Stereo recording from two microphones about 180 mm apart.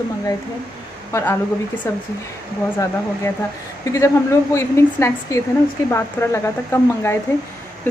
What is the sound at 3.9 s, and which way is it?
Speech, 15° left (ahead or behind).